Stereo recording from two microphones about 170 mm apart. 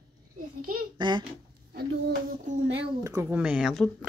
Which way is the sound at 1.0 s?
25° right (ahead or behind).